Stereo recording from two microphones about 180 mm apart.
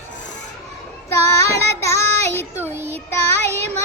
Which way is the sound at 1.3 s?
15° left (ahead or behind).